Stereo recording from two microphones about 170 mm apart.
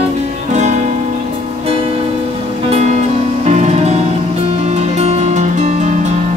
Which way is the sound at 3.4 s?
40° right (ahead or behind).